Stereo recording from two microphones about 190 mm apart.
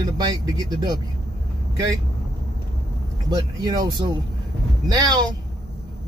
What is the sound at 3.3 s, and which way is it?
Speech, 20° right (ahead or behind).